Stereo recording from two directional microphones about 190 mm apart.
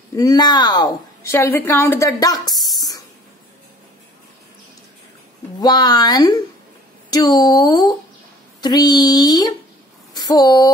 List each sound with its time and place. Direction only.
0.1 s a woman's voice: 20° left (ahead or behind)
5.6 s a woman's voice: 20° left (ahead or behind)